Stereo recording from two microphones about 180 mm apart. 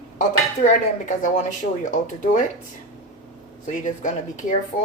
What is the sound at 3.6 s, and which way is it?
Speech, 45° left (ahead or behind).